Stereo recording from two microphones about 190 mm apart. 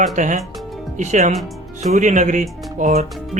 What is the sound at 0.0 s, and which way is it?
Speech, 40° right (ahead or behind).